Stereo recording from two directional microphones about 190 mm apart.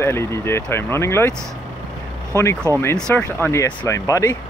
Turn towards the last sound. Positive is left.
turn(degrees=15)  # may be behind; listen again after turning